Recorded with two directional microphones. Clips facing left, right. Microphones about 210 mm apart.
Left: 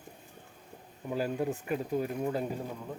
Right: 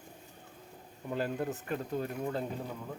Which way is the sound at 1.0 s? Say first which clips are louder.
Left 2 dB; 5° left (ahead or behind).